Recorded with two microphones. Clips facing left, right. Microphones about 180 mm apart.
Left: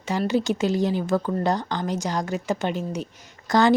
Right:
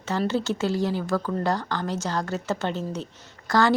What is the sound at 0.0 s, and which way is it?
A woman's voice, 15° left (ahead or behind).